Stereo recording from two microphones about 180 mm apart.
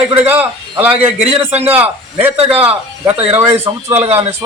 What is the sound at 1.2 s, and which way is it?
Speech, 35° right (ahead or behind).